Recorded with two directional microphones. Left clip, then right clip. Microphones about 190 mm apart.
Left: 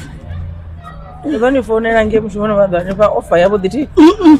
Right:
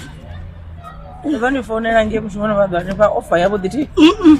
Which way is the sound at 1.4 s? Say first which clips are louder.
Left 7 dB; 30° left (ahead or behind).